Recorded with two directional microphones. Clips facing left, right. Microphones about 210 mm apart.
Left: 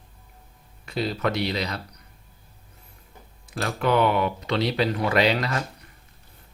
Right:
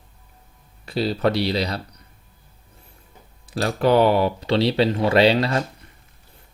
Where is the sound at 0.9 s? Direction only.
30° right (ahead or behind).